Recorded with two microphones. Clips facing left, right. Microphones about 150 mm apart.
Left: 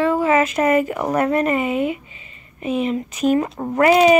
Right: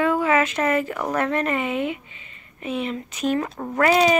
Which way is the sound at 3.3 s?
15° left (ahead or behind).